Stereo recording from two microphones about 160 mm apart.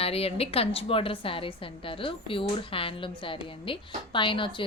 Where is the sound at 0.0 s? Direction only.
40° left (ahead or behind).